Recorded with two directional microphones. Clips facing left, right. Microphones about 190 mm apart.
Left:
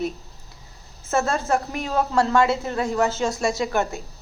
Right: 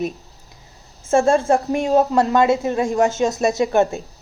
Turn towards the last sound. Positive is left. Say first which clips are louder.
# right 7 dB
turn(degrees=-20)  # may be behind; listen again after turning